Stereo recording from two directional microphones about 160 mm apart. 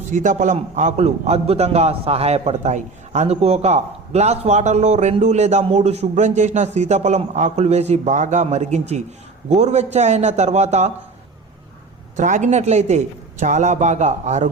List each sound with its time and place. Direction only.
0.1 s a man's voice: 50° right (ahead or behind)
12.1 s a man's voice: 50° right (ahead or behind)